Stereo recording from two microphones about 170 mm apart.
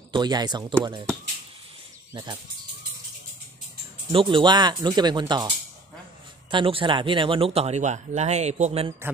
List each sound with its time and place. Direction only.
0.1 s speech: 25° right (ahead or behind)
4.1 s speech: 30° right (ahead or behind)
6.5 s speech: 30° right (ahead or behind)